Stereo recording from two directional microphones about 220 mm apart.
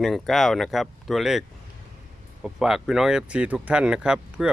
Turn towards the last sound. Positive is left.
turn(degrees=-5)  # may be behind; listen again after turning